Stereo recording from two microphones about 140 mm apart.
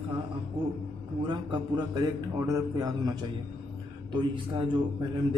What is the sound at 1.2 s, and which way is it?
A man's voice, 35° right (ahead or behind).